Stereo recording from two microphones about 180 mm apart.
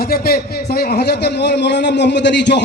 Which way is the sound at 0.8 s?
60° left (ahead or behind).